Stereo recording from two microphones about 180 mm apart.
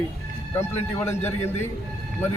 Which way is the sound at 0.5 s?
15° left (ahead or behind).